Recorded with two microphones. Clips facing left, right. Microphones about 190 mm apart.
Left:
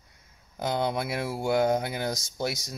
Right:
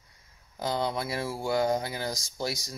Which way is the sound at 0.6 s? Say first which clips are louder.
Left 2 dB; 20° left (ahead or behind).